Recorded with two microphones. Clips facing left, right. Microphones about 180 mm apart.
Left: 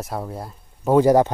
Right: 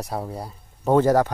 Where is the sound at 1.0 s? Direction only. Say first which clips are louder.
Left 4 dB; 15° left (ahead or behind).